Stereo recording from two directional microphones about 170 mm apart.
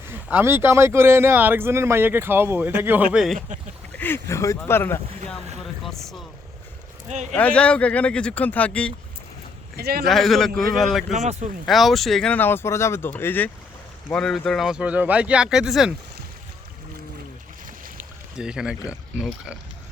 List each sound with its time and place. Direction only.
0.1 s speech: 10° right (ahead or behind)
3.9 s speech: 10° left (ahead or behind)
5.8 s speech: centre (ahead or behind)
7.1 s speech: 45° right (ahead or behind)
7.3 s speech: 5° left (ahead or behind)
9.7 s speech: 65° right (ahead or behind)
10.1 s speech: centre (ahead or behind)
11.1 s speech: 40° right (ahead or behind)
11.6 s speech: centre (ahead or behind)
17.9 s a sound: 5° right (ahead or behind)
18.9 s speech: 5° right (ahead or behind)